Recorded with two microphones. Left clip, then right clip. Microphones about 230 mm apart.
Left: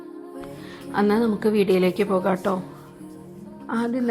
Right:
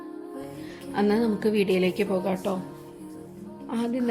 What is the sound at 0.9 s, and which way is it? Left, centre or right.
A woman's voice, centre.